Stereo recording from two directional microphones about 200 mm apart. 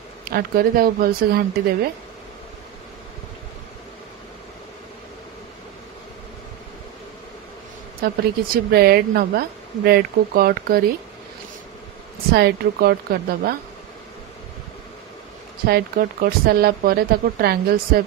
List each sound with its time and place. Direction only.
0.3 s speech: 50° right (ahead or behind)
8.0 s speech: 50° right (ahead or behind)
12.3 s speech: 50° right (ahead or behind)
15.6 s speech: 50° right (ahead or behind)